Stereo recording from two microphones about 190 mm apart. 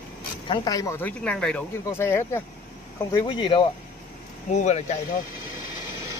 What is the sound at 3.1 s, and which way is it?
Speech, 25° left (ahead or behind).